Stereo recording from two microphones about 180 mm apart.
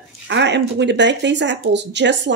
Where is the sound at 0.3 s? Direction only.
75° right (ahead or behind).